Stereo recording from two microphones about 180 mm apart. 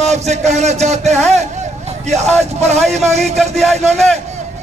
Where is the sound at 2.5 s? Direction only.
35° right (ahead or behind).